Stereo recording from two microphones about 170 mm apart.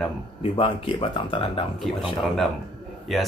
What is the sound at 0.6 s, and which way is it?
Speech, 30° left (ahead or behind).